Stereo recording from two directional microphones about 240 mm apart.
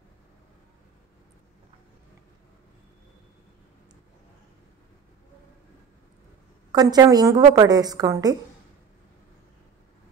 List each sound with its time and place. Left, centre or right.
6.7 s a woman's voice: centre